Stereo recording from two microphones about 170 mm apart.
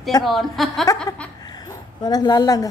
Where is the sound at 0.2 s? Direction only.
Centre (ahead or behind).